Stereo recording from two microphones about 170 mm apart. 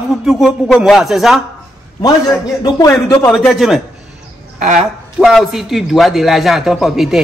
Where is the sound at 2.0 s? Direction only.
20° left (ahead or behind).